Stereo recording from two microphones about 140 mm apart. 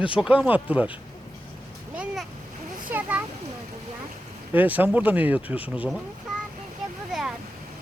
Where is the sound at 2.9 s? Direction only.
10° right (ahead or behind).